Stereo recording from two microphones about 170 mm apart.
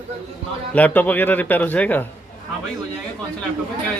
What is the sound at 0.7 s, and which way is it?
Speech, 10° left (ahead or behind).